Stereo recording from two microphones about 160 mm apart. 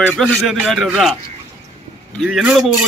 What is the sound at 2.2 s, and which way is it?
Speech, 5° right (ahead or behind).